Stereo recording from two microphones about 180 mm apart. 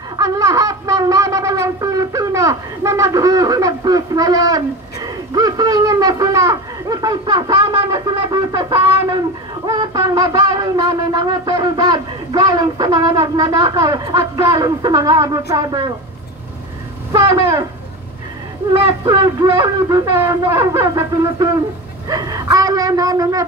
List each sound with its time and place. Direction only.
0.2 s shofar: 20° right (ahead or behind)
5.0 s a sound: 20° right (ahead or behind)
17.1 s speech: 15° right (ahead or behind)
19.0 s speech: 20° right (ahead or behind)